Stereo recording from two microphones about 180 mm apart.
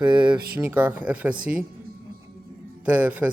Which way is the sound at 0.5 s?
10° right (ahead or behind).